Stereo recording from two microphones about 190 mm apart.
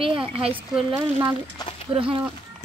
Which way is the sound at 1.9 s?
30° right (ahead or behind).